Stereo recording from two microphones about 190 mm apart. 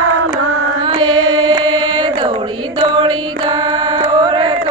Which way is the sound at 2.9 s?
25° right (ahead or behind).